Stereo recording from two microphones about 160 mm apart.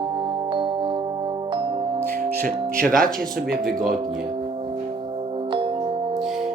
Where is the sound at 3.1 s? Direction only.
Centre (ahead or behind).